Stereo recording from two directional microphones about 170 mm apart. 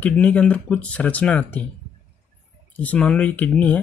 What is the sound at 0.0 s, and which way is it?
Speech, 10° left (ahead or behind).